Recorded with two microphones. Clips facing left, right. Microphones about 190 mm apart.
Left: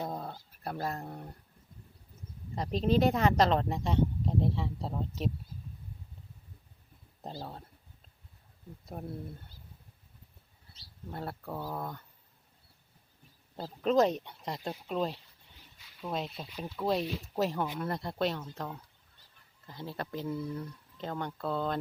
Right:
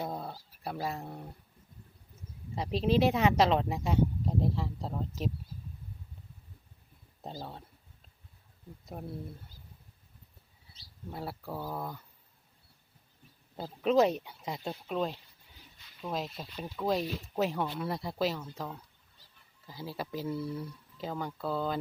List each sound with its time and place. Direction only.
0.0 s dog: 5° right (ahead or behind)
2.6 s speech: 5° right (ahead or behind)
8.9 s speech: centre (ahead or behind)
11.1 s speech: 5° right (ahead or behind)
13.6 s speech: 5° right (ahead or behind)